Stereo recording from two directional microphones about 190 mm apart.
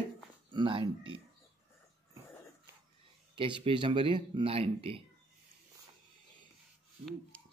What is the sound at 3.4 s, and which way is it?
Speech, 25° right (ahead or behind).